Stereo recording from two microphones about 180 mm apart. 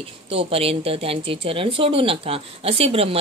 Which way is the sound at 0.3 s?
30° right (ahead or behind).